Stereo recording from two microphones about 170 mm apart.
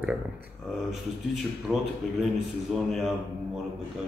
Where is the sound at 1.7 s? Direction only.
5° left (ahead or behind).